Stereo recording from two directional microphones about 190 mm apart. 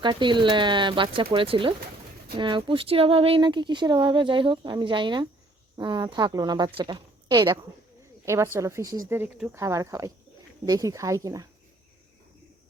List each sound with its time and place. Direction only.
0.0 s a woman's voice: 25° right (ahead or behind)